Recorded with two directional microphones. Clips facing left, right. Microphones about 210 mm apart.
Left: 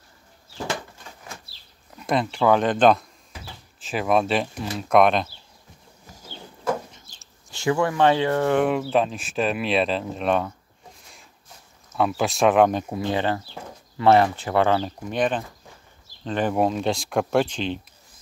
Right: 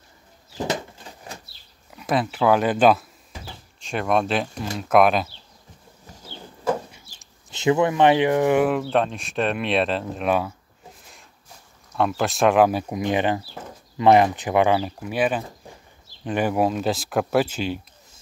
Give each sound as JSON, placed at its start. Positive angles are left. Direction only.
{"t": 0.6, "sound": "bird", "side_deg": -20}
{"t": 2.0, "sound": "speech", "side_deg": -5}
{"t": 6.3, "sound": "a sound", "side_deg": -10}
{"t": 7.2, "sound": "speech", "side_deg": -20}
{"t": 8.6, "sound": "speech", "side_deg": 0}
{"t": 11.9, "sound": "speech", "side_deg": 0}